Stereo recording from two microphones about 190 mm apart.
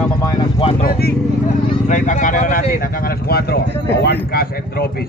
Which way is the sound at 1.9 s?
40° left (ahead or behind).